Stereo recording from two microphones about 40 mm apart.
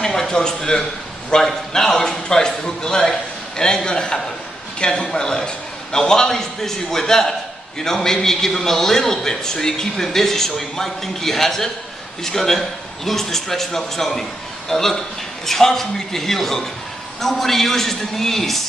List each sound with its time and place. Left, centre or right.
0.0 s a man's voice: centre